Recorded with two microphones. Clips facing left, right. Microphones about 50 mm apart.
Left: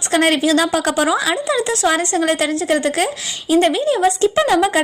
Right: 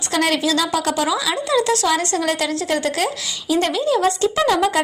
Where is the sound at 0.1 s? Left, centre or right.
Left.